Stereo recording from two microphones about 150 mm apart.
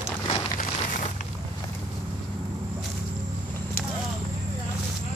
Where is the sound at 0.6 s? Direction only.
55° left (ahead or behind).